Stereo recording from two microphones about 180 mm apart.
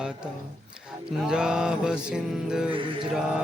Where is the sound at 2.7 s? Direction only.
30° right (ahead or behind).